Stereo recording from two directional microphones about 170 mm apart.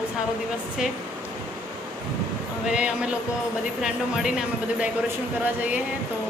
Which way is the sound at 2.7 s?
5° right (ahead or behind).